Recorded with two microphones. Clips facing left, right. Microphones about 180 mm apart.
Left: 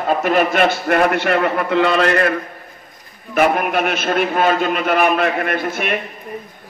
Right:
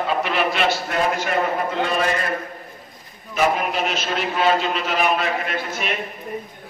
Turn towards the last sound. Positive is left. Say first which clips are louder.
# left 5 dB
turn(degrees=55)  # may be behind; listen again after turning